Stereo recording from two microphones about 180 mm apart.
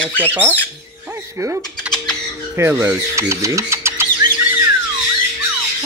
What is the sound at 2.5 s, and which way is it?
Speech, 15° right (ahead or behind).